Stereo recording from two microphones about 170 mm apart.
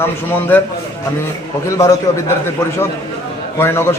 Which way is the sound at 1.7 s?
20° left (ahead or behind).